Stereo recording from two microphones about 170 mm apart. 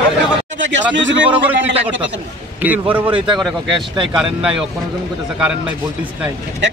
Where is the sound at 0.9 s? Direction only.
90° right.